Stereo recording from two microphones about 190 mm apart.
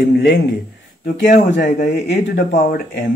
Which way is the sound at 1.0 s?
40° left (ahead or behind).